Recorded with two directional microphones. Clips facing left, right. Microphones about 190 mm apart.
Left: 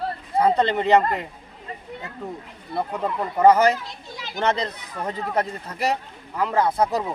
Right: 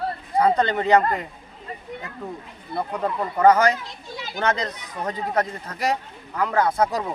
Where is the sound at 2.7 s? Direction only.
5° left (ahead or behind).